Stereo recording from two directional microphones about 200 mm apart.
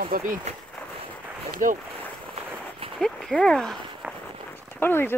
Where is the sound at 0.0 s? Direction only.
45° right (ahead or behind).